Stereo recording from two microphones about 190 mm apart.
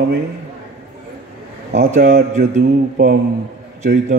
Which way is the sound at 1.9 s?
50° right (ahead or behind).